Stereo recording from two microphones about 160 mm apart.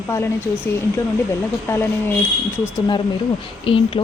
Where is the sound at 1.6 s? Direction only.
15° left (ahead or behind).